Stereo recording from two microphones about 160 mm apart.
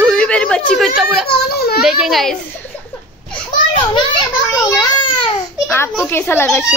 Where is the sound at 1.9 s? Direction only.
Centre (ahead or behind).